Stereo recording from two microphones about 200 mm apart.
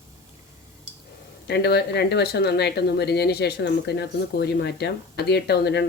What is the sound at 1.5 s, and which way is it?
Speech, 55° left (ahead or behind).